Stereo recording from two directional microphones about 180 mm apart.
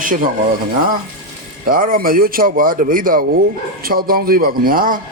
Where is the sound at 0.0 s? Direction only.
45° right (ahead or behind).